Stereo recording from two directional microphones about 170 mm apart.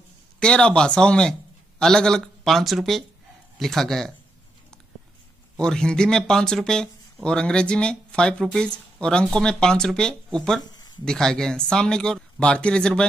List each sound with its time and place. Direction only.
0.4 s speech: 5° left (ahead or behind)
5.6 s speech: 5° left (ahead or behind)
10.6 s a sound: 25° left (ahead or behind)
11.1 s speech: 5° left (ahead or behind)